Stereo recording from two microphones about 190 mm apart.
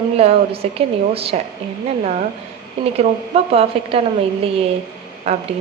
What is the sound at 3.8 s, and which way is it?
Speech, 30° right (ahead or behind).